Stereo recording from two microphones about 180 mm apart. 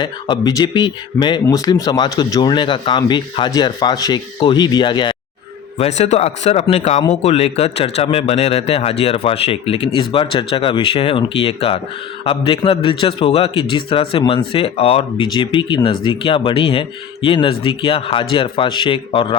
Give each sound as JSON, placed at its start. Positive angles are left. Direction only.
{"t": 0.0, "sound": "speech", "side_deg": 25}
{"t": 5.7, "sound": "speech", "side_deg": 40}